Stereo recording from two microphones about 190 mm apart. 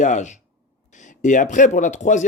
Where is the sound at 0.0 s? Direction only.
40° left (ahead or behind).